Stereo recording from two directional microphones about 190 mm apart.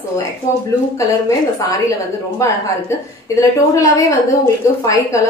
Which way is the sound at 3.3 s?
15° left (ahead or behind).